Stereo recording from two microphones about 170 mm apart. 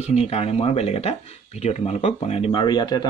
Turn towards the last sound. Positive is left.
turn(degrees=25)  # may be behind; listen again after turning